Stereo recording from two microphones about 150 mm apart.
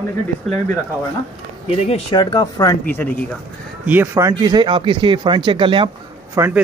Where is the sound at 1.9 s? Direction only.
30° left (ahead or behind).